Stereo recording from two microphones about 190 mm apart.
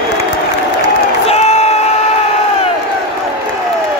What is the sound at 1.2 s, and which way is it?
Crowd, 35° left (ahead or behind).